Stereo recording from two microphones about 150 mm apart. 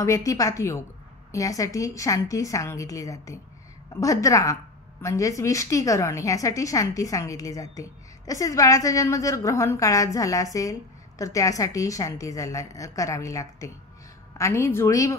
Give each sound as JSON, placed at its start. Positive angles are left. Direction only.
{"t": 0.0, "sound": "a woman's voice", "side_deg": 20}